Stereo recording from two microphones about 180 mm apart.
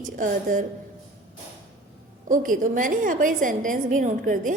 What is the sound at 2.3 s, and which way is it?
A woman's voice, 50° right (ahead or behind).